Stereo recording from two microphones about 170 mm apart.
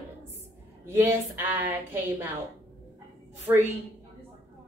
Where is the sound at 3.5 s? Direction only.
10° right (ahead or behind).